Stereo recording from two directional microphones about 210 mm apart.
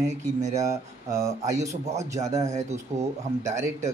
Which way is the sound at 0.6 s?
15° right (ahead or behind).